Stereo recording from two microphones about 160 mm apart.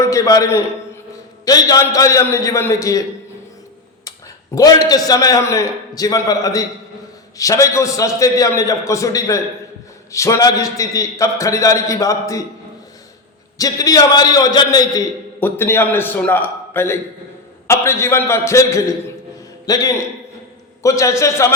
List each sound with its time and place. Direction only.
0.0 s a man's voice: 20° left (ahead or behind)
4.5 s a man's voice: 25° left (ahead or behind)
13.6 s a man's voice: 20° left (ahead or behind)
15.4 s a man's voice: 15° left (ahead or behind)